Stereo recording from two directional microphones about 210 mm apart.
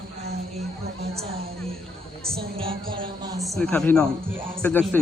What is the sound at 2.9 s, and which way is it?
Speech, 20° right (ahead or behind).